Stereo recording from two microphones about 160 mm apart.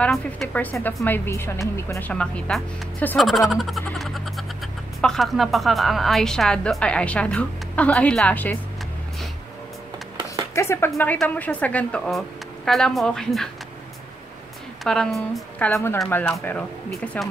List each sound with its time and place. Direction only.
0.0 s speech: 5° left (ahead or behind)
3.3 s a sound: centre (ahead or behind)
5.0 s a woman's voice: centre (ahead or behind)
10.5 s music: 15° left (ahead or behind)
11.0 s a woman's voice: 10° left (ahead or behind)
14.8 s a woman's voice: centre (ahead or behind)
16.1 s speech: 10° left (ahead or behind)